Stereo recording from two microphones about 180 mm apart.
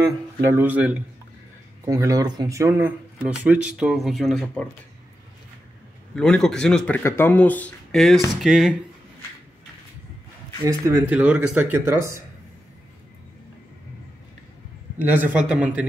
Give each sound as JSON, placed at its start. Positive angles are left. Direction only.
{"t": 0.0, "sound": "speech", "side_deg": -10}
{"t": 1.9, "sound": "speech", "side_deg": -20}
{"t": 6.1, "sound": "speech", "side_deg": 5}
{"t": 10.6, "sound": "speech", "side_deg": -20}
{"t": 11.1, "sound": "speech", "side_deg": -10}
{"t": 15.0, "sound": "speech", "side_deg": -10}